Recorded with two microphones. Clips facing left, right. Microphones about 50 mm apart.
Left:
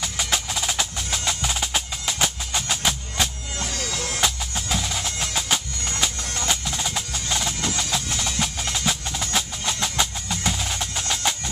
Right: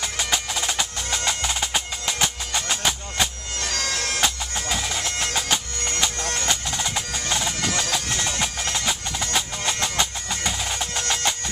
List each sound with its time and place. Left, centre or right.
0.0 s percussion: centre
3.6 s bagpipes: right
4.2 s music: centre
6.4 s percussion: centre
7.9 s music: centre